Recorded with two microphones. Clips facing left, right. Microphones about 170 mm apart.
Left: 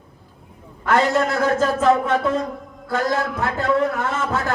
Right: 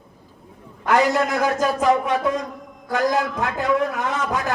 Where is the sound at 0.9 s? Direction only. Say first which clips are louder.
Even; 10° right (ahead or behind).